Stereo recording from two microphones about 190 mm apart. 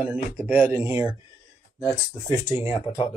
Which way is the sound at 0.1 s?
10° right (ahead or behind).